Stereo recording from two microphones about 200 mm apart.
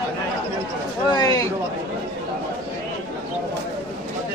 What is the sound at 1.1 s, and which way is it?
Speech, 20° left (ahead or behind).